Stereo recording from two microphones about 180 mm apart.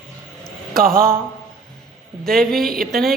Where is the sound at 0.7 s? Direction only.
55° right (ahead or behind).